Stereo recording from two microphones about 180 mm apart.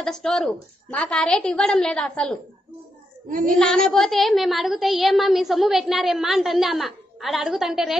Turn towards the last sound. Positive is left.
turn(degrees=0)  # may be behind; listen again after turning